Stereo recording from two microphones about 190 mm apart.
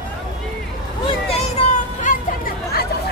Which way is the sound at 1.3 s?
40° left (ahead or behind).